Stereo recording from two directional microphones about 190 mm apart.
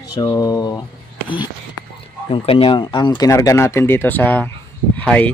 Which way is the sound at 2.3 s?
30° left (ahead or behind).